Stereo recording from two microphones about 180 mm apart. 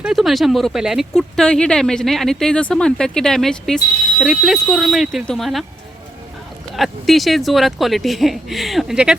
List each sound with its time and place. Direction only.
0.0 s speech: centre (ahead or behind)
6.7 s speech: centre (ahead or behind)